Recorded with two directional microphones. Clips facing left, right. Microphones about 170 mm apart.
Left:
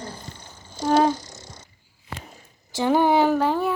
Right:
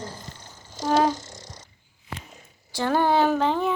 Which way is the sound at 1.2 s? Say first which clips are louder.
Even; 30° right (ahead or behind).